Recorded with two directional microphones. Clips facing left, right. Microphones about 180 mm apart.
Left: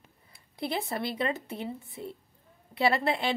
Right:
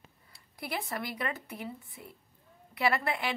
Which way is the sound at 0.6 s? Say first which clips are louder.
Left 5 dB; 25° left (ahead or behind).